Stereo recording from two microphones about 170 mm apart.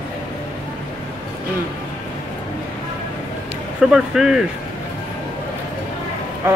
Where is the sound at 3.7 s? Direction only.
5° right (ahead or behind).